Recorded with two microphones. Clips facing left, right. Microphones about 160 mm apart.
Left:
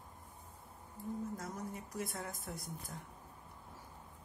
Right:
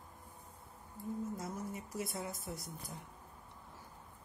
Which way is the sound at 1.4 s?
10° right (ahead or behind).